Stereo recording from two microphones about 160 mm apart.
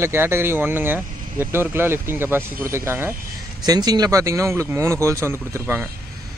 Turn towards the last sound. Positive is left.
turn(degrees=-15)  # may be behind; listen again after turning